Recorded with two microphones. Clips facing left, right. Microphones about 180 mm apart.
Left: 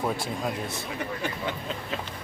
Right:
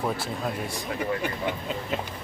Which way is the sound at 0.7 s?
10° right (ahead or behind).